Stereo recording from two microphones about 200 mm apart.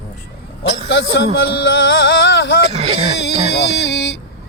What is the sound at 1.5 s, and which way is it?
Music, 65° left (ahead or behind).